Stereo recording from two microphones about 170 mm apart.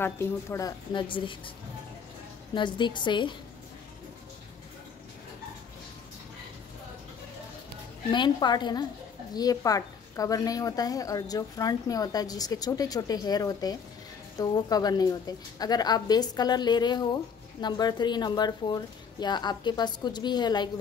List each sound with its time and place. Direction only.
0.0 s a woman's voice: 15° left (ahead or behind); by 1.5 s 30° left (ahead or behind)
2.5 s a woman's voice: 25° left (ahead or behind)
8.1 s a woman's voice: 25° left (ahead or behind)